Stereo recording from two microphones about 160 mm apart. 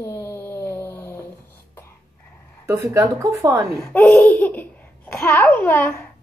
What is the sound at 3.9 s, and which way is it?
A child's voice, 10° left (ahead or behind).